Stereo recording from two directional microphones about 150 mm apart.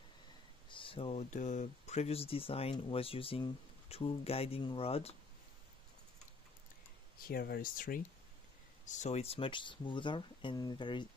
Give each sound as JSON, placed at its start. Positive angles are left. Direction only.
{"t": 0.7, "sound": "speech", "side_deg": 35}
{"t": 7.2, "sound": "speech", "side_deg": 85}
{"t": 8.8, "sound": "speech", "side_deg": 50}